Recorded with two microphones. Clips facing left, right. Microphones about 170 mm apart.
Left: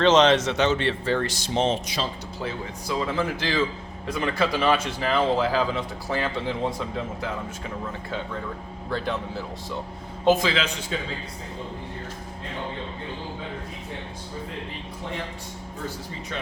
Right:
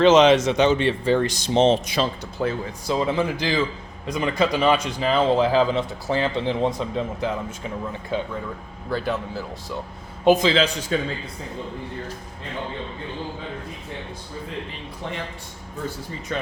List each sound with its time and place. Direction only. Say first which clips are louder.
0.0 s speech: right 4 dB; 10° right (ahead or behind); by 1.8 s 25° right (ahead or behind)
1.9 s speech: right 6 dB; 55° right (ahead or behind)
2.8 s a man's voice: right 4 dB; 25° right (ahead or behind)
8.9 s speech: right 3 dB; 5° right (ahead or behind)
10.2 s a man's voice: right 4 dB; 20° right (ahead or behind)
10.9 s speech: right 7 dB; 50° right (ahead or behind)